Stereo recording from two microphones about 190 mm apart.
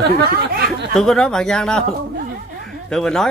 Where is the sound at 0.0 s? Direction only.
60° right (ahead or behind).